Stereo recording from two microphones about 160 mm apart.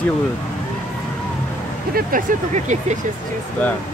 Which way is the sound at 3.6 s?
10° left (ahead or behind).